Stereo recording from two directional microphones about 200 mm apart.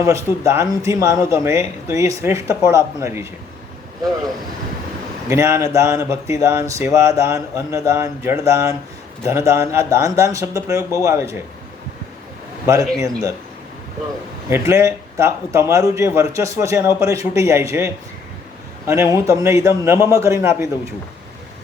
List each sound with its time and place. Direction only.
0.0 s speech: 15° right (ahead or behind)
5.3 s speech: 15° right (ahead or behind)
12.6 s speech: 15° right (ahead or behind)
14.5 s speech: 15° right (ahead or behind)